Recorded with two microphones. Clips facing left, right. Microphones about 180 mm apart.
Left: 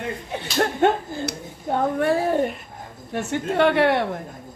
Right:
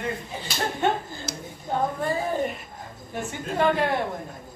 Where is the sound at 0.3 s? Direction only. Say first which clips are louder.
Left 6 dB; 65° left (ahead or behind).